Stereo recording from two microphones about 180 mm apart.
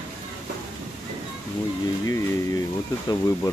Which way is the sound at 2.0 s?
20° left (ahead or behind).